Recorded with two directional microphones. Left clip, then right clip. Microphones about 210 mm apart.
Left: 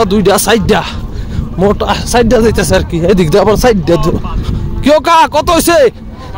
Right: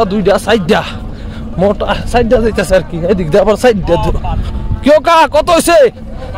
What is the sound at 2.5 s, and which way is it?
Speech, 15° left (ahead or behind).